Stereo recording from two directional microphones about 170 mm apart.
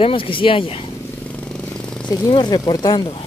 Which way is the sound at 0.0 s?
30° left (ahead or behind).